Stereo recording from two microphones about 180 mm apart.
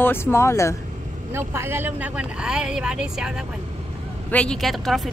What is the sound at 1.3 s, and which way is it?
Speech, 15° right (ahead or behind).